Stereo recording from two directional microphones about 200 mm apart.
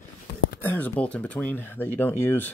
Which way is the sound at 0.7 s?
10° left (ahead or behind).